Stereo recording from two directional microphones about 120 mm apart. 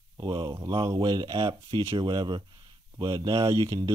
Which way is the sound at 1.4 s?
50° right (ahead or behind).